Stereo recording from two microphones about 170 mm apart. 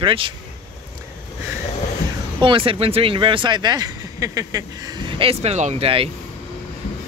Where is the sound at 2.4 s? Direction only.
30° right (ahead or behind).